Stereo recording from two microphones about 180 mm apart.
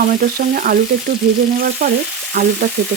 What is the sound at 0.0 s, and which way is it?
Stir, 55° right (ahead or behind).